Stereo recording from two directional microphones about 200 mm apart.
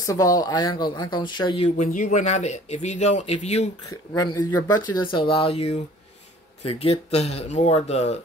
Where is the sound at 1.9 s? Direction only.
40° left (ahead or behind).